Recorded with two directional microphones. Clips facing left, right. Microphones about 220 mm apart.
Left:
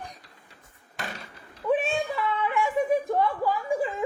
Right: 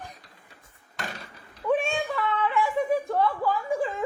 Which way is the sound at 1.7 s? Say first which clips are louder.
Even; 5° left (ahead or behind).